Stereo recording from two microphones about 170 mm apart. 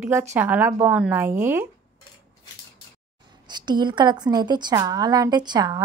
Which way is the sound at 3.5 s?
25° right (ahead or behind).